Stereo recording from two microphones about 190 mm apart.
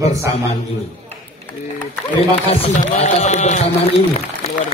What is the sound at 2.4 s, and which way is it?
A man's voice, 35° left (ahead or behind).